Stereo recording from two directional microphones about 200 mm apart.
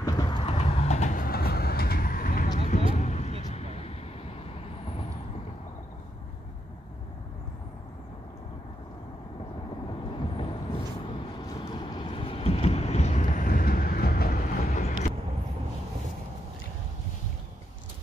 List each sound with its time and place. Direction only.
0.0 s vehicle: 20° left (ahead or behind); by 2.5 s 45° left (ahead or behind)
3.0 s a sound: 35° left (ahead or behind)
3.4 s vehicle: 30° left (ahead or behind)
10.3 s vehicle: 25° left (ahead or behind)